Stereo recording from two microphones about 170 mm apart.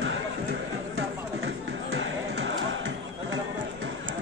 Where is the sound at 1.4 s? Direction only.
90° right.